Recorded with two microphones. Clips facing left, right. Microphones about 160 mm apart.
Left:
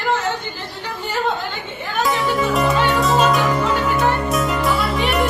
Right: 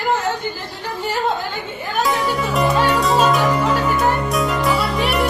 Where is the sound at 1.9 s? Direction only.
Centre (ahead or behind).